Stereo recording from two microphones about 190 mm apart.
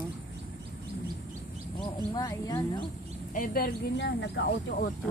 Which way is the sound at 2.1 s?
20° left (ahead or behind).